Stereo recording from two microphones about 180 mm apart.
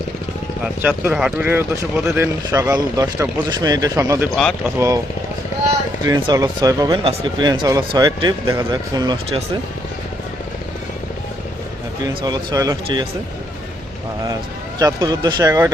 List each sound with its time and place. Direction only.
0.6 s speech: 10° right (ahead or behind)
6.1 s speech: 20° right (ahead or behind)
7.0 s speech: 35° right (ahead or behind)
12.0 s speech: 20° right (ahead or behind)
14.8 s speech: 20° right (ahead or behind)